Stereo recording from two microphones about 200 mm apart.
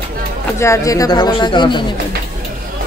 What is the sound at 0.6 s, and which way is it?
Speech, 15° left (ahead or behind).